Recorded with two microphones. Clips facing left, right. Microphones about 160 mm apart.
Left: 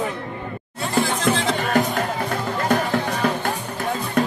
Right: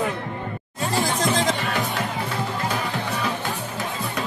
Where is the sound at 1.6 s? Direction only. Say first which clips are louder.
Left 5 dB; 45° left (ahead or behind).